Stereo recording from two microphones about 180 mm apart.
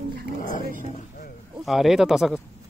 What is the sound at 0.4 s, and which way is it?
Dog, 45° left (ahead or behind).